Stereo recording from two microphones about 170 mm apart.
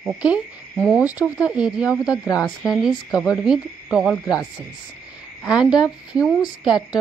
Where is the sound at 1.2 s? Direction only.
5° right (ahead or behind).